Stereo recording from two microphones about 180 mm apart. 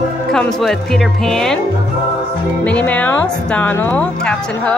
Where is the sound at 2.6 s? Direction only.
10° left (ahead or behind).